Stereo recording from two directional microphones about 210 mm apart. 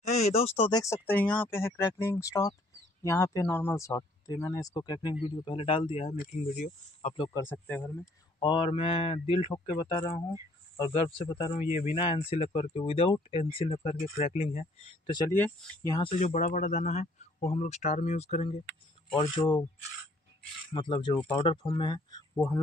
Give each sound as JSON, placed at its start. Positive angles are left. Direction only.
{"t": 0.0, "sound": "a sound", "side_deg": 30}
{"t": 0.6, "sound": "speech", "side_deg": 20}
{"t": 6.4, "sound": "speech", "side_deg": 40}
{"t": 7.3, "sound": "speech", "side_deg": 10}
{"t": 16.2, "sound": "speech", "side_deg": 35}
{"t": 20.7, "sound": "speech", "side_deg": 20}